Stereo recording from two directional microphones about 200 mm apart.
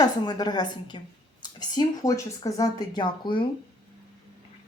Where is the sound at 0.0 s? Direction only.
20° left (ahead or behind).